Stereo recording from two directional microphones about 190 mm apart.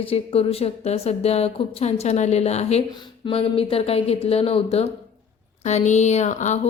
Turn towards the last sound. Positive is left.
turn(degrees=40)  # may be behind; listen again after turning